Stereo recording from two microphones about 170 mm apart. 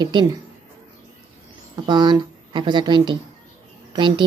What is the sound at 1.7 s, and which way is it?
A woman's voice, 25° right (ahead or behind).